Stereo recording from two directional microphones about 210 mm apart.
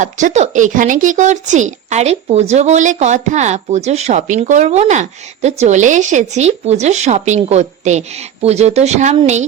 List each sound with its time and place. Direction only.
0.0 s speech: 35° right (ahead or behind)